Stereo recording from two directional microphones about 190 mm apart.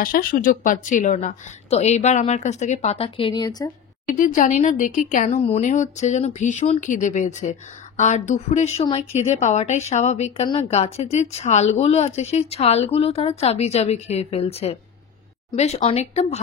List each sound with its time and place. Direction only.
0.0 s a woman's voice: 50° left (ahead or behind); by 3.7 s 20° left (ahead or behind)
4.1 s a woman's voice: 45° left (ahead or behind)